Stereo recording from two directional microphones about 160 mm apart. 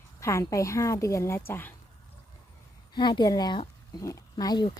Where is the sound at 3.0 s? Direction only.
25° left (ahead or behind).